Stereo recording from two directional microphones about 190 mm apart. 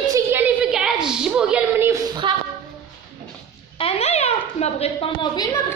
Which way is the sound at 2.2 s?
25° right (ahead or behind).